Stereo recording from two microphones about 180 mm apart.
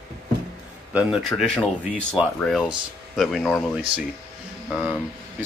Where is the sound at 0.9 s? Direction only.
Centre (ahead or behind).